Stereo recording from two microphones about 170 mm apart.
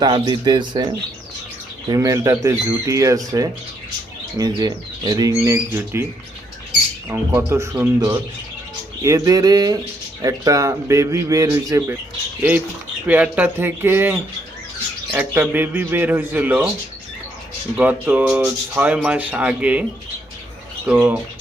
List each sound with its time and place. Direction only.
0.0 s speech: 25° right (ahead or behind)
7.1 s speech: 15° right (ahead or behind)
17.7 s speech: 10° right (ahead or behind)
20.8 s speech: 10° right (ahead or behind)